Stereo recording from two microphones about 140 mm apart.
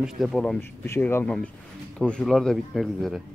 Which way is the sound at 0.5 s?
15° left (ahead or behind).